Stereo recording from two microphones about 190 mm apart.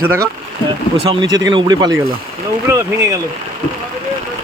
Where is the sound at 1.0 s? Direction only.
25° right (ahead or behind).